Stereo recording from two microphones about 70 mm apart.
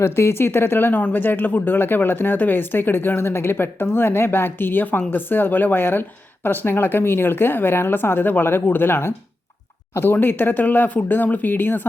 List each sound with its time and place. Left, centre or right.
0.0 s speech: left